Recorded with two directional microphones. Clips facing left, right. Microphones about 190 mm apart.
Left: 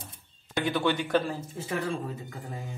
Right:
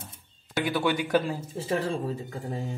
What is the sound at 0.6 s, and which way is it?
Speech, 10° right (ahead or behind).